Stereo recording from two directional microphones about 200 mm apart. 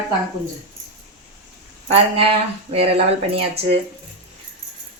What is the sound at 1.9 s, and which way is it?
Speech, 30° right (ahead or behind).